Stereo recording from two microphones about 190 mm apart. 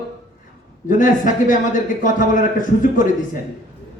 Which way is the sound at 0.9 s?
45° left (ahead or behind).